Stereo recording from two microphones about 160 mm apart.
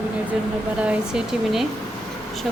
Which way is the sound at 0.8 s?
5° right (ahead or behind).